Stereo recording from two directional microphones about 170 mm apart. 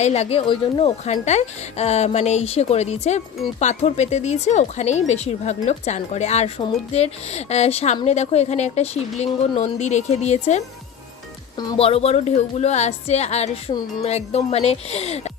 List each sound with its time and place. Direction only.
0.0 s a woman's voice: 40° left (ahead or behind)
11.5 s speech: 25° left (ahead or behind)
11.8 s a woman's voice: 35° left (ahead or behind)